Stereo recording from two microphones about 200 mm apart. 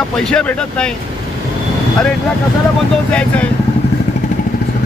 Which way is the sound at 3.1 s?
5° left (ahead or behind).